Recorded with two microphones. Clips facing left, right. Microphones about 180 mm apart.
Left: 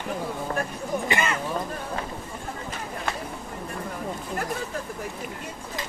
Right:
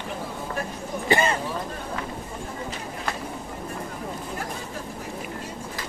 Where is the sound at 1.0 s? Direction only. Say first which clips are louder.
Right 7 dB; 35° right (ahead or behind).